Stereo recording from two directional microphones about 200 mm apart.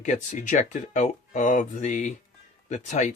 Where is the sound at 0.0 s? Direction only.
40° left (ahead or behind).